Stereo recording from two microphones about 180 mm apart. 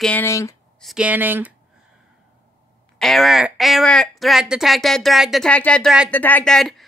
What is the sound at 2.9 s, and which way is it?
A woman's voice, centre (ahead or behind).